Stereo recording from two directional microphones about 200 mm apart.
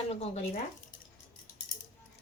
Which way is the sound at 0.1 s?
30° left (ahead or behind).